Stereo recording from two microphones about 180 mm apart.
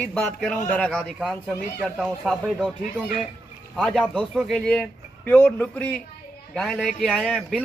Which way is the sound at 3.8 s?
Centre (ahead or behind).